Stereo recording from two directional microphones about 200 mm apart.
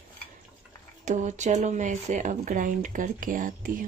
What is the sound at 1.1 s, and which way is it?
Speech, 35° right (ahead or behind).